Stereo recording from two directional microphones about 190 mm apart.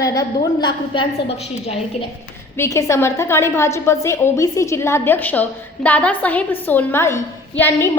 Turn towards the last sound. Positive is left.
turn(degrees=10)  # may be behind; listen again after turning